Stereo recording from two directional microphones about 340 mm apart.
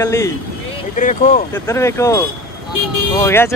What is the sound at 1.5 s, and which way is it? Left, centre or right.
Speech, centre.